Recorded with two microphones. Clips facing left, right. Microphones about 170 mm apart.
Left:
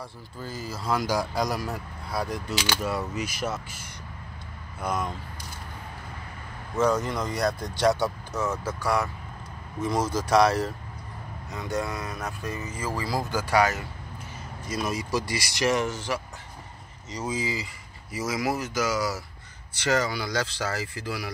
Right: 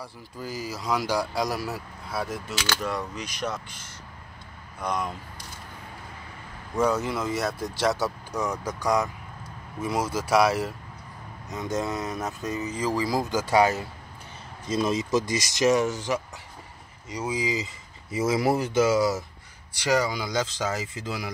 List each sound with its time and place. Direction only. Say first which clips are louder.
0.0 s speech: right 1 dB; 5° right (ahead or behind)
6.8 s speech: even; 10° right (ahead or behind)
8.4 s speech: even; 15° right (ahead or behind)
11.5 s speech: right 2 dB; 20° right (ahead or behind)
18.1 s speech: right 5 dB; 25° right (ahead or behind)
19.7 s speech: right 1 dB; 10° right (ahead or behind)